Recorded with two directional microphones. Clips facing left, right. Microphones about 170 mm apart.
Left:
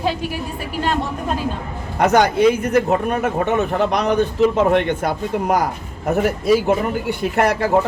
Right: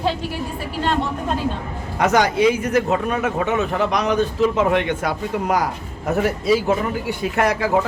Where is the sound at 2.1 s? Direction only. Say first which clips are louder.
Left 2 dB; 55° left (ahead or behind).